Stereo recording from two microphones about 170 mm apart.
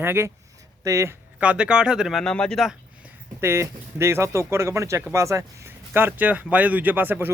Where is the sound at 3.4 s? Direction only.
15° right (ahead or behind).